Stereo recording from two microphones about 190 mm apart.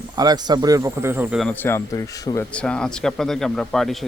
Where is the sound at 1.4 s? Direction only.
5° left (ahead or behind).